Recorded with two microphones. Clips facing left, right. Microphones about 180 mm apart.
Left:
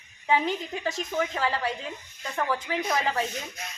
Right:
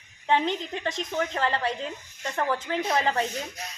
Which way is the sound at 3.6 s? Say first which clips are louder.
Right 1 dB; 35° right (ahead or behind).